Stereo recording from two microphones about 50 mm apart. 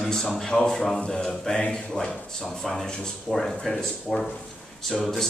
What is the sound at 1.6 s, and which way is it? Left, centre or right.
Speech, centre.